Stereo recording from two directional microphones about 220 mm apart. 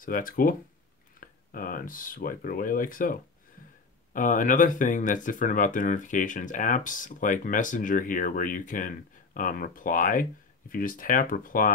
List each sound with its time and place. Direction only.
0.0 s speech: 40° left (ahead or behind)